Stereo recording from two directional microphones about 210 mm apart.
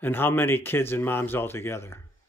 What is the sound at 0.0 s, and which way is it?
Speech, 10° left (ahead or behind).